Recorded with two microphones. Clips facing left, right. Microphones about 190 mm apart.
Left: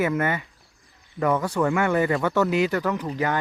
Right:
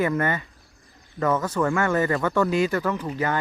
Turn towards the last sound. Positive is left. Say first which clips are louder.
# even
turn(degrees=15)  # may be behind; listen again after turning